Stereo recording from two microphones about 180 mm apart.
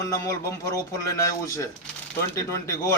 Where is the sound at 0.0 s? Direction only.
20° left (ahead or behind).